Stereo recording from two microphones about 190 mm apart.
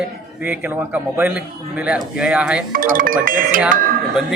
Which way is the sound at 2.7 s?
45° right (ahead or behind).